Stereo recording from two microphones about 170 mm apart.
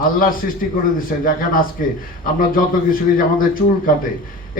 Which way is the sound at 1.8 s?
55° left (ahead or behind).